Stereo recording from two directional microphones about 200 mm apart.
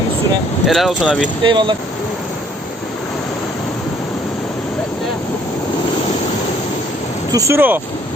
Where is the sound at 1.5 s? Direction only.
25° right (ahead or behind).